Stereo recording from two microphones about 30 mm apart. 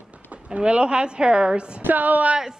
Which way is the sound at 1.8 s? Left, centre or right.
Right.